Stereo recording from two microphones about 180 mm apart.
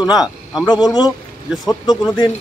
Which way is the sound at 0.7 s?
20° left (ahead or behind).